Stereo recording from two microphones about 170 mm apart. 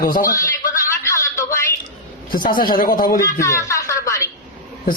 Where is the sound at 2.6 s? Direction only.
55° left (ahead or behind).